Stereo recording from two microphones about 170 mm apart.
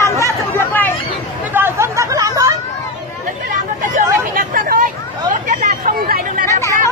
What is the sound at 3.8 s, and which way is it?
Vehicle, 55° right (ahead or behind).